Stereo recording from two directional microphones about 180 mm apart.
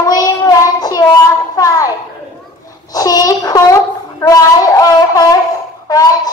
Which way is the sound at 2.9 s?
20° left (ahead or behind).